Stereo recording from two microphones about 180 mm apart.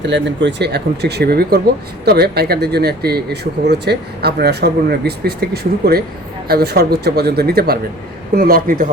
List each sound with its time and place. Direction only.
0.1 s a man's voice: 75° right (ahead or behind); by 8.9 s 50° right (ahead or behind)